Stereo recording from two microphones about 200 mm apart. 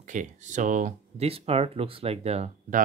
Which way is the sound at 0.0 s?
40° right (ahead or behind).